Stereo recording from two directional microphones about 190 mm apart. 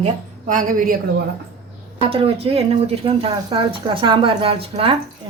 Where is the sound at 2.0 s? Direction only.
30° right (ahead or behind).